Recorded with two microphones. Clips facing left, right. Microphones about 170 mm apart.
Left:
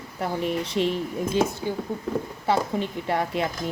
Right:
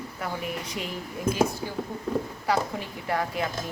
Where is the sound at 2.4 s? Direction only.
25° left (ahead or behind).